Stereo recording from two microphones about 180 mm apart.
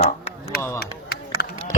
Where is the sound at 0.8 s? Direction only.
60° left (ahead or behind).